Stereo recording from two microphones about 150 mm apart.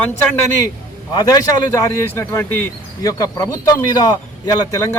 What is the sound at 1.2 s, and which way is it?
Speech, 25° left (ahead or behind).